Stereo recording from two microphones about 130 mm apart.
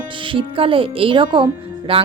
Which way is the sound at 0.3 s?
45° right (ahead or behind).